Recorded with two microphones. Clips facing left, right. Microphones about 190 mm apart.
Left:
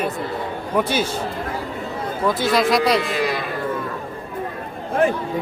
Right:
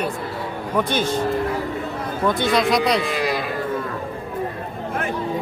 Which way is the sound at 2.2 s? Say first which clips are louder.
Even; centre (ahead or behind).